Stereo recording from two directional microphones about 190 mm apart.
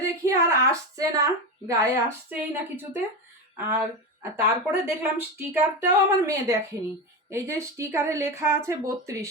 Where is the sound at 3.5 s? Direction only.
10° right (ahead or behind).